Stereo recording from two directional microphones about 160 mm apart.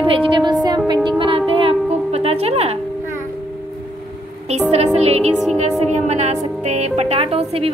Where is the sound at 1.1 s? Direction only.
30° right (ahead or behind).